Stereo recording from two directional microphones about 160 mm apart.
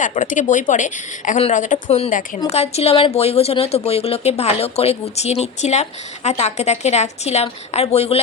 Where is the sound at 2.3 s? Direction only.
40° left (ahead or behind).